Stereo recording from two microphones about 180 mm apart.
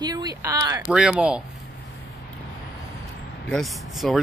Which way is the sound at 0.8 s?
5° right (ahead or behind).